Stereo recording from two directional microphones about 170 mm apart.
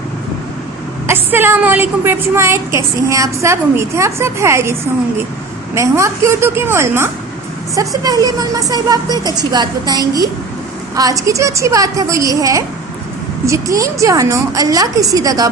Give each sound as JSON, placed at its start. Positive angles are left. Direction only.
{"t": 1.0, "sound": "a woman's voice", "side_deg": -10}